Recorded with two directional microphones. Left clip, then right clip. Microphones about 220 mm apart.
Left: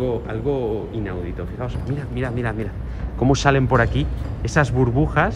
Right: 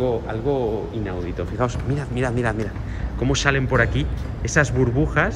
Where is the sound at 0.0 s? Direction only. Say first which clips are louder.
Right 1 dB; 10° right (ahead or behind).